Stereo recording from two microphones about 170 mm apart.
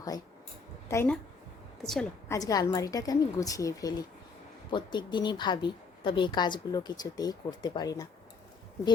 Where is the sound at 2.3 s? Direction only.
20° left (ahead or behind).